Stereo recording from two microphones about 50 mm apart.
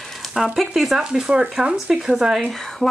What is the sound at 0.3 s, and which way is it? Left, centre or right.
Speech, centre.